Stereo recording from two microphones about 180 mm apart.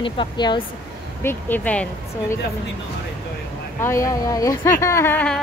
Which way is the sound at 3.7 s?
15° left (ahead or behind).